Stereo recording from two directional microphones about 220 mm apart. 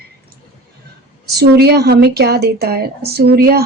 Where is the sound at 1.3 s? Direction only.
45° right (ahead or behind).